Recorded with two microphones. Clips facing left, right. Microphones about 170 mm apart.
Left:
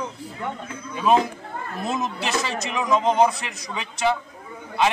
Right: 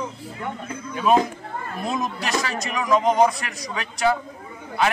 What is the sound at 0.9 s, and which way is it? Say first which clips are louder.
Speech: even; 5° right (ahead or behind).